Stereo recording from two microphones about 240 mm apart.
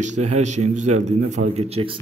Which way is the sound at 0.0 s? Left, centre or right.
Right.